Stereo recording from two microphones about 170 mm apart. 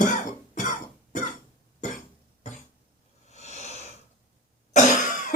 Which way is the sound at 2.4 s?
45° left (ahead or behind).